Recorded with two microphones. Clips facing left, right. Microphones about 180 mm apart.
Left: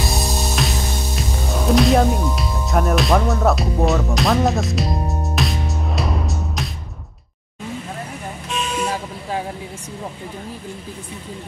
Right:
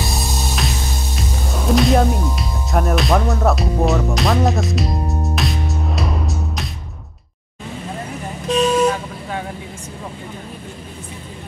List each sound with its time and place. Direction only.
0.0 s music: centre (ahead or behind)
1.1 s speech: centre (ahead or behind)
5.3 s music: centre (ahead or behind)
8.5 s vehicle: 35° right (ahead or behind)